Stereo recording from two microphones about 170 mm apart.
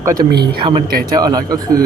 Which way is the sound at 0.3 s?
70° right (ahead or behind).